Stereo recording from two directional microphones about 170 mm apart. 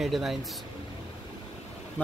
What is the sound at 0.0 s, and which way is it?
Speech, centre (ahead or behind).